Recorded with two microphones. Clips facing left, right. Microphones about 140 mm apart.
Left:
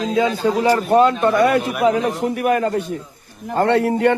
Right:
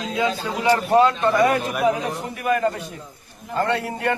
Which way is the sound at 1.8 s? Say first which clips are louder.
Left 5 dB; 70° left (ahead or behind).